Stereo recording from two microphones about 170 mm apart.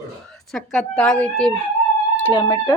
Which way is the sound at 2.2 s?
25° left (ahead or behind).